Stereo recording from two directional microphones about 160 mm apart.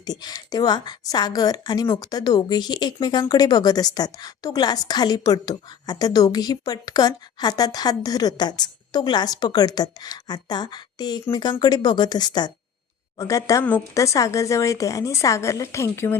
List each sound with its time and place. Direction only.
0.0 s a woman's voice: 25° left (ahead or behind)